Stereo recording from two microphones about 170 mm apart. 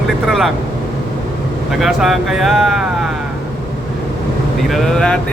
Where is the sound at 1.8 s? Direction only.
Centre (ahead or behind).